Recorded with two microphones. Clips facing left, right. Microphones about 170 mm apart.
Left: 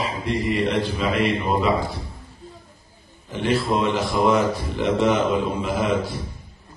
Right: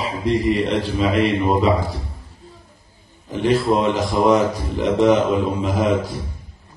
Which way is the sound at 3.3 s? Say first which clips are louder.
Right 4 dB; 40° right (ahead or behind).